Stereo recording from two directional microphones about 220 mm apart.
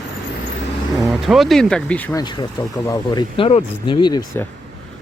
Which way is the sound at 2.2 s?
20° left (ahead or behind).